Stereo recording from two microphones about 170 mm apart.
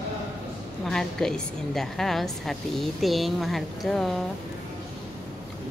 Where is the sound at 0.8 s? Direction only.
5° left (ahead or behind).